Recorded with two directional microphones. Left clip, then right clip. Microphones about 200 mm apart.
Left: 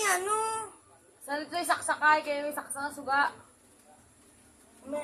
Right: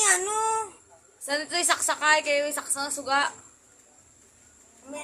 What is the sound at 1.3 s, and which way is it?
A woman's voice, 45° right (ahead or behind).